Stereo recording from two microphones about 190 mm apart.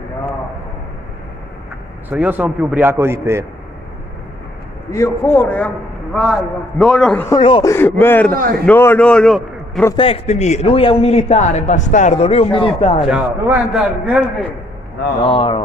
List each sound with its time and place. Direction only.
2.0 s a man's voice: 10° right (ahead or behind)
4.9 s a man's voice: 15° left (ahead or behind)
7.2 s speech: 25° left (ahead or behind)
7.7 s a man's voice: 10° left (ahead or behind)
8.3 s a man's voice: 50° right (ahead or behind)
8.6 s a man's voice: 10° left (ahead or behind)
9.9 s a man's voice: 30° left (ahead or behind)
13.0 s a man's voice: 5° right (ahead or behind)
15.2 s speech: 25° left (ahead or behind)